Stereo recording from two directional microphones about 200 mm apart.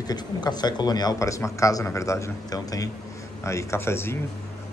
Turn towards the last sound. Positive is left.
turn(degrees=10)  # may be behind; listen again after turning